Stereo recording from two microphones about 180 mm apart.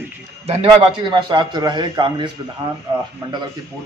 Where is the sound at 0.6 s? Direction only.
25° right (ahead or behind).